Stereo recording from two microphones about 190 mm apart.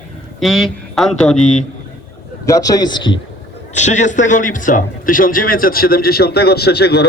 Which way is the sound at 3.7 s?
40° left (ahead or behind).